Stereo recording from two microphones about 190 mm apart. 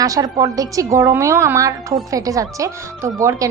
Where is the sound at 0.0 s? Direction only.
20° right (ahead or behind).